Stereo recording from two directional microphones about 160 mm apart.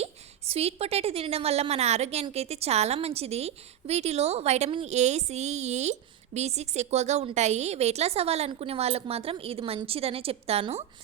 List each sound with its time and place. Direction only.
0.0 s a woman's voice: 40° right (ahead or behind)